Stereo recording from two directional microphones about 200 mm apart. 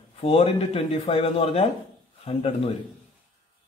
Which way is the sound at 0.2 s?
30° left (ahead or behind).